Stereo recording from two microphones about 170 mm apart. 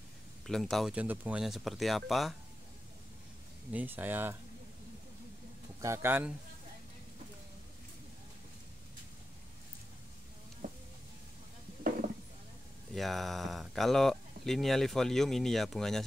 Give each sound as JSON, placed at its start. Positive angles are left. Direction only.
{"t": 0.5, "sound": "speech", "side_deg": 0}
{"t": 3.7, "sound": "speech", "side_deg": -10}
{"t": 5.8, "sound": "speech", "side_deg": -15}
{"t": 10.6, "sound": "music", "side_deg": -50}
{"t": 12.9, "sound": "speech", "side_deg": 0}